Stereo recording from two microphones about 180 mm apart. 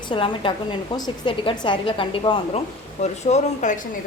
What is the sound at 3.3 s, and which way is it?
Speech, 45° left (ahead or behind).